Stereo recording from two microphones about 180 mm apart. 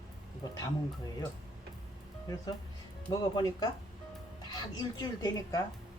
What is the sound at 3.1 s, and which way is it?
Speech, 20° left (ahead or behind).